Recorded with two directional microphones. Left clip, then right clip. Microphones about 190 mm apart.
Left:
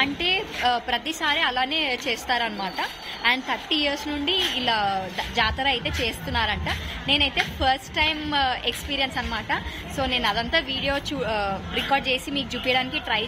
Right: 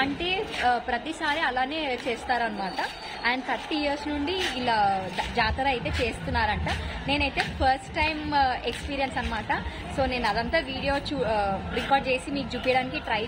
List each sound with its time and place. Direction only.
0.0 s a woman's voice: 10° left (ahead or behind)